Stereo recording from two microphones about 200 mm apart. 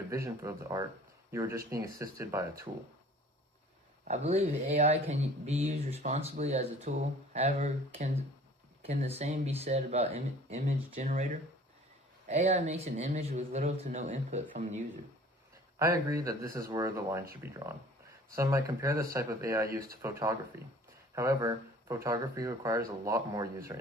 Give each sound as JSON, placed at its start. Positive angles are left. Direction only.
{"t": 0.1, "sound": "speech", "side_deg": -15}
{"t": 4.0, "sound": "speech", "side_deg": -35}
{"t": 12.3, "sound": "speech", "side_deg": -35}
{"t": 15.8, "sound": "speech", "side_deg": -15}
{"t": 18.3, "sound": "speech", "side_deg": -15}